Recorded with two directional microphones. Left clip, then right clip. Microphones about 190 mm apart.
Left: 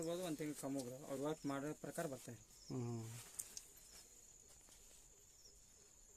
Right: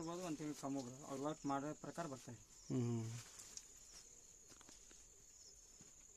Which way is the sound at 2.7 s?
40° right (ahead or behind).